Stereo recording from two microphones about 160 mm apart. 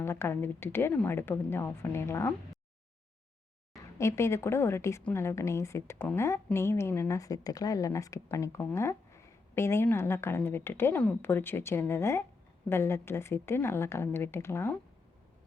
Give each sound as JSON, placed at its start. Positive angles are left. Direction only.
{"t": 0.0, "sound": "a woman's voice", "side_deg": 15}
{"t": 3.9, "sound": "a woman's voice", "side_deg": 15}